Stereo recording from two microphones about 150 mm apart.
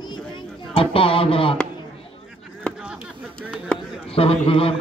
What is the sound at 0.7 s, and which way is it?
Speech, 35° left (ahead or behind).